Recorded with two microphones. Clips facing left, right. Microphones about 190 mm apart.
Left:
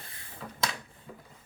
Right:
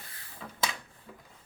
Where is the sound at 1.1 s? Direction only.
Centre (ahead or behind).